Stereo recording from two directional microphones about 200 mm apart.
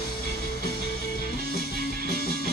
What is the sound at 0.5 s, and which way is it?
Music, 55° left (ahead or behind).